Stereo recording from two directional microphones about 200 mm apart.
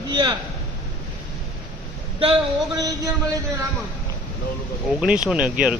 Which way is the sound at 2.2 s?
25° right (ahead or behind).